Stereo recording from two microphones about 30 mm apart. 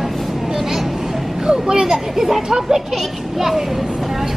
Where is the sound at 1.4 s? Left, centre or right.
Right.